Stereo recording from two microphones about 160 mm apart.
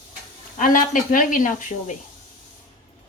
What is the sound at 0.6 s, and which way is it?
A woman's voice, 60° left (ahead or behind).